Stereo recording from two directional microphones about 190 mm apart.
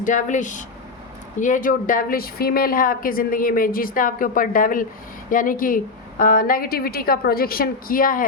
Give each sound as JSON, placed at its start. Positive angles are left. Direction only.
{"t": 0.0, "sound": "a woman's voice", "side_deg": 40}